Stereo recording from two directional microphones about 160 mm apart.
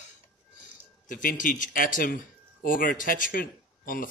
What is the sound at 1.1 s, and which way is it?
Speech, 55° left (ahead or behind).